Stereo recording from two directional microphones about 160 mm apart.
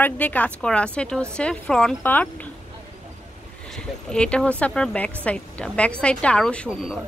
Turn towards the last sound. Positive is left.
turn(degrees=-5)  # may be behind; listen again after turning